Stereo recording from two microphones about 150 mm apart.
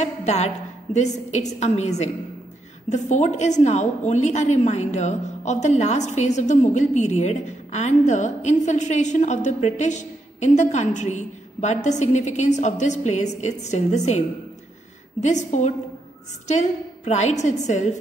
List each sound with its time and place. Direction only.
0.0 s a woman's voice: 50° left (ahead or behind)